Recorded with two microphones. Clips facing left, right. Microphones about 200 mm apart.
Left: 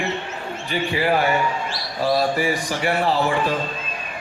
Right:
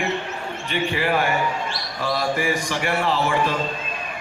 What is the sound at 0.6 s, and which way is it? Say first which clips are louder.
A man's voice: left 2 dB; 35° left (ahead or behind).